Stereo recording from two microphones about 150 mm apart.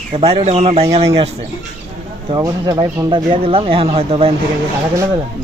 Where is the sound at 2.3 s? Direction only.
25° right (ahead or behind); by 4.3 s 40° right (ahead or behind).